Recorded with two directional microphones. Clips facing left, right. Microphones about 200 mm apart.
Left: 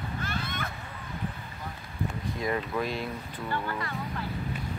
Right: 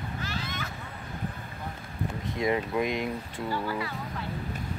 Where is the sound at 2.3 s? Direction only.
20° right (ahead or behind).